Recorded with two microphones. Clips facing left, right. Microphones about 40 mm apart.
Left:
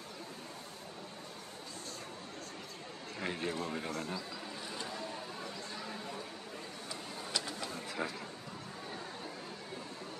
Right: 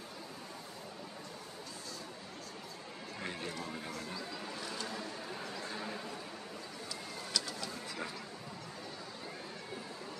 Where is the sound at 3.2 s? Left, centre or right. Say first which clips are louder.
Left 5 dB; left.